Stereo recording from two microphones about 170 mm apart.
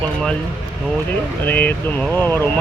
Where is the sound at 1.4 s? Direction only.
10° left (ahead or behind).